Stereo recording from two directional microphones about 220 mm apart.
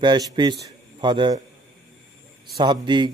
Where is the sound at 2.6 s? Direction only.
20° right (ahead or behind).